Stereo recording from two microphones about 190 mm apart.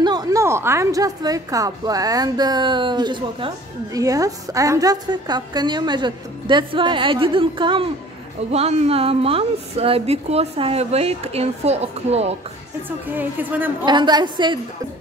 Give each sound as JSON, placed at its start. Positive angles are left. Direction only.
{"t": 0.0, "sound": "a woman's voice", "side_deg": -20}
{"t": 13.1, "sound": "a woman's voice", "side_deg": -10}
{"t": 13.8, "sound": "a woman's voice", "side_deg": -25}